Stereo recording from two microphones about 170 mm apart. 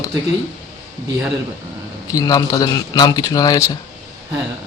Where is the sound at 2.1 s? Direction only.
20° left (ahead or behind).